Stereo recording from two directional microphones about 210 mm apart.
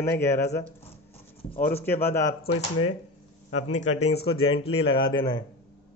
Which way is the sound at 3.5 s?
35° left (ahead or behind).